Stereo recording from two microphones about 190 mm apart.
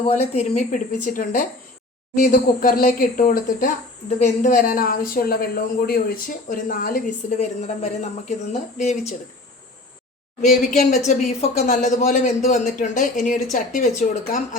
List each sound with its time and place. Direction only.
0.2 s a man's voice: 35° left (ahead or behind)
10.4 s a man's voice: 40° left (ahead or behind)